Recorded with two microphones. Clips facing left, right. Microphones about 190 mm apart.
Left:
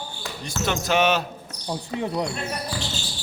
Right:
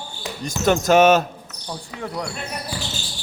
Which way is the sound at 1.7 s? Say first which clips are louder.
Left 4 dB; 20° left (ahead or behind).